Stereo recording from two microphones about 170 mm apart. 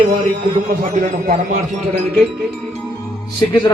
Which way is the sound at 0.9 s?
45° right (ahead or behind).